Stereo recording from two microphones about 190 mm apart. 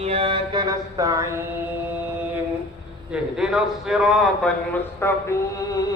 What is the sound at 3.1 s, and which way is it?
A man's voice, 5° right (ahead or behind).